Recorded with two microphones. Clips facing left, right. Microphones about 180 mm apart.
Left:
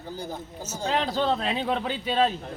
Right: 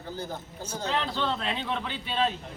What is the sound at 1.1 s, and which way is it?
Speech, 40° left (ahead or behind).